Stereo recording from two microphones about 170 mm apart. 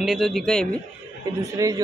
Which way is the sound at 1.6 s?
20° right (ahead or behind).